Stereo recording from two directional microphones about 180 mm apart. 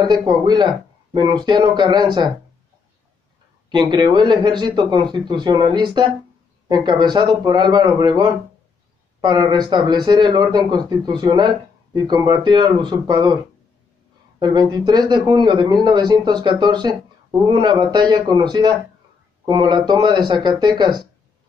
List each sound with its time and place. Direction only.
0.0 s speech: 25° right (ahead or behind)
3.7 s speech: 25° right (ahead or behind)
14.4 s speech: 25° right (ahead or behind)